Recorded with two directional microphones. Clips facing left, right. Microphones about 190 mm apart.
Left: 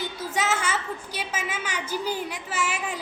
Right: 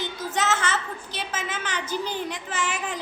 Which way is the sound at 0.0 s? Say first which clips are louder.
Right 1 dB; 10° left (ahead or behind).